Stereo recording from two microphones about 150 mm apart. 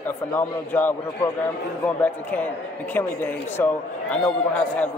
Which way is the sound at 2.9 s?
15° left (ahead or behind).